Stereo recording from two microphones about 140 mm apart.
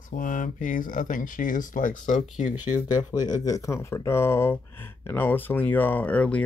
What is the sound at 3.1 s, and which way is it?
Speech, 25° left (ahead or behind).